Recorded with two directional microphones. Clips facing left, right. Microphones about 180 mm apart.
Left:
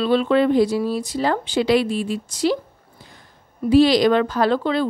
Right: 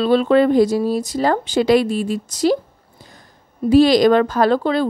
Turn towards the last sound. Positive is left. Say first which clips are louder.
# right 3 dB
turn(degrees=-40)  # may be behind; listen again after turning